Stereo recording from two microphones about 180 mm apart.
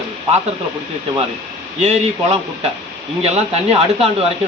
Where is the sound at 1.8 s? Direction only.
40° right (ahead or behind).